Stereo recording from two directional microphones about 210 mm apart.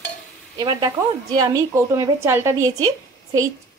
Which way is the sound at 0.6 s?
15° right (ahead or behind).